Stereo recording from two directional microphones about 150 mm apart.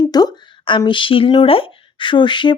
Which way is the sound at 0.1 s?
25° left (ahead or behind).